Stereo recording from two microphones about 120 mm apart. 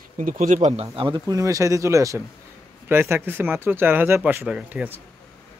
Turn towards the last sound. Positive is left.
turn(degrees=-15)  # may be behind; listen again after turning